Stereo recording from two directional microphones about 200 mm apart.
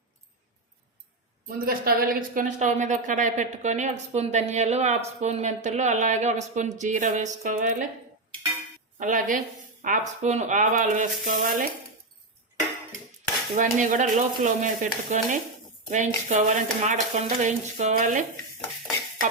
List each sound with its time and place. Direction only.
1.5 s a woman's voice: 45° right (ahead or behind)
9.0 s a woman's voice: 40° right (ahead or behind)
13.6 s a woman's voice: 40° right (ahead or behind)